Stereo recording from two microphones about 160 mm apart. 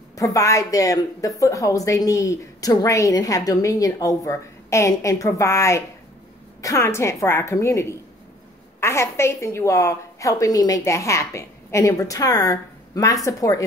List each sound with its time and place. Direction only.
0.1 s a woman's voice: 20° left (ahead or behind)